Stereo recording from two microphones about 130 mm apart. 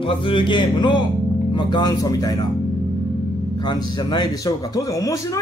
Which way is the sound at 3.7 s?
35° left (ahead or behind).